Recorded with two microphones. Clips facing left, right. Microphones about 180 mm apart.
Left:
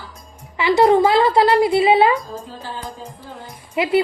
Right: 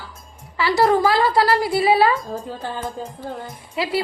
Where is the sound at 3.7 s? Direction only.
20° left (ahead or behind).